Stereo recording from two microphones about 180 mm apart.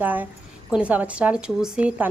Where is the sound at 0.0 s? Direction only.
10° right (ahead or behind).